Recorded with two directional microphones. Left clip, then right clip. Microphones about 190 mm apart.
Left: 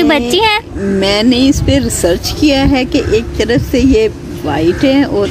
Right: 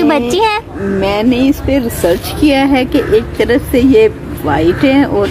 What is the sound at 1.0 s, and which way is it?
Speech, 40° left (ahead or behind).